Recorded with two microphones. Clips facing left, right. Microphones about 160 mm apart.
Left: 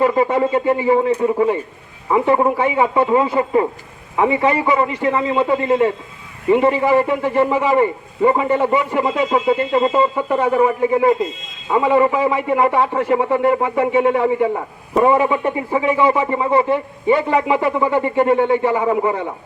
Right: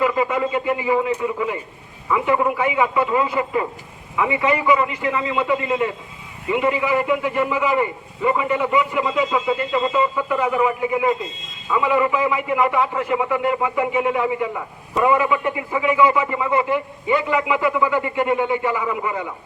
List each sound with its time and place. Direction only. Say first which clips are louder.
0.0 s a man's voice: left 4 dB; 35° left (ahead or behind)